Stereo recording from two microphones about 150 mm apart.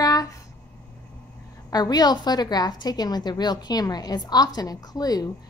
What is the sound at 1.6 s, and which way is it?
A woman's voice, 25° left (ahead or behind).